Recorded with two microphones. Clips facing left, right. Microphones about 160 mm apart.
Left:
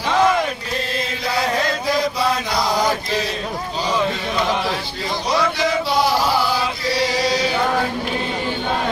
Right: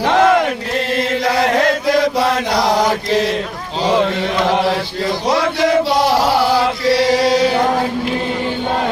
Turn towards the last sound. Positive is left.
turn(degrees=-60)  # may be behind; listen again after turning